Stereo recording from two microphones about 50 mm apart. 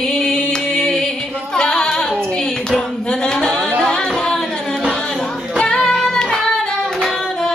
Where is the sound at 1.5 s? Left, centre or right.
Centre.